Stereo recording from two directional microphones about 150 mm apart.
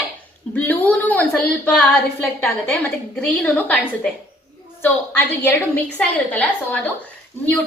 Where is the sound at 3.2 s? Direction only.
10° left (ahead or behind).